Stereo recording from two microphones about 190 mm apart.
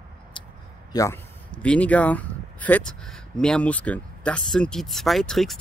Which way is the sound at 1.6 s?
5° left (ahead or behind).